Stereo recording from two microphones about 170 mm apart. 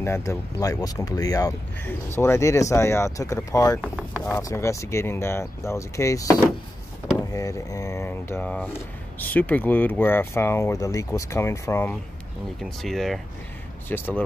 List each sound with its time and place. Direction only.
0.0 s speech: 15° left (ahead or behind)
12.6 s speech: centre (ahead or behind)